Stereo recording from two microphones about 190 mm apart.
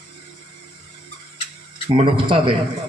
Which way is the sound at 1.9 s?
25° right (ahead or behind).